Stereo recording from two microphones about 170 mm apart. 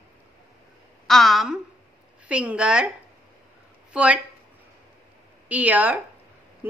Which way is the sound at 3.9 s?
5° right (ahead or behind).